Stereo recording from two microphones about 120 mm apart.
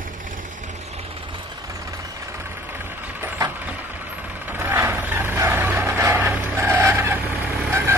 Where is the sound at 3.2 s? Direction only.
20° right (ahead or behind).